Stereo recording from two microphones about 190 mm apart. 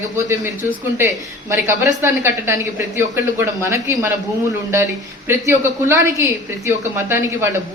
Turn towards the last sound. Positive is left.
turn(degrees=-15)  # may be behind; listen again after turning